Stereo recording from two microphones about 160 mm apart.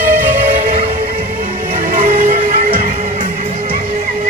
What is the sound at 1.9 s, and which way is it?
Music, 50° right (ahead or behind).